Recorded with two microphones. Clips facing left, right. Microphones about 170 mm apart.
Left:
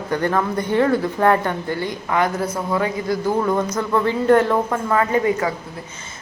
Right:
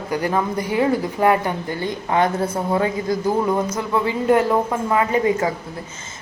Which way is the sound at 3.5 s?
10° right (ahead or behind).